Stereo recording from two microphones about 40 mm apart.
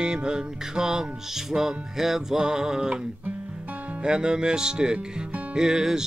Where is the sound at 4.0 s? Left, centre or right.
Right.